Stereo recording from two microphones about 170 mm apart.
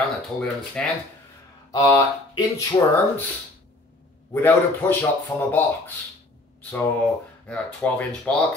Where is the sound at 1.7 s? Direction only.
20° left (ahead or behind).